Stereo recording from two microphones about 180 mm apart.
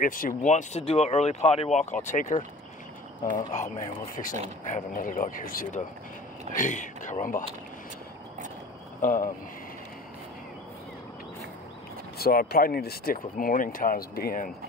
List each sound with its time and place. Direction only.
0.0 s speech: 50° left (ahead or behind)
0.5 s speech: 35° left (ahead or behind)
3.5 s speech: 45° left (ahead or behind)
9.0 s speech: 50° left (ahead or behind)
12.2 s speech: 55° left (ahead or behind)